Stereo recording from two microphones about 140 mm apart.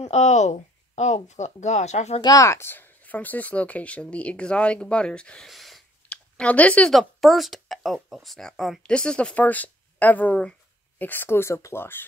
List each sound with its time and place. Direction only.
0.0 s speech: 55° left (ahead or behind)
2.2 s speech: 25° left (ahead or behind)